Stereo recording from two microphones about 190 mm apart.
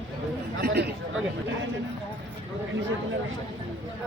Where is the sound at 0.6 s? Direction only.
55° right (ahead or behind).